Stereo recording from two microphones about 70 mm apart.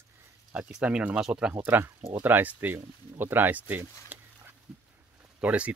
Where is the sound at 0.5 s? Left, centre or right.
Centre.